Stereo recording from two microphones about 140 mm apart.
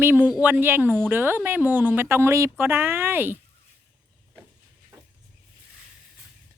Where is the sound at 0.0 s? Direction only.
15° right (ahead or behind).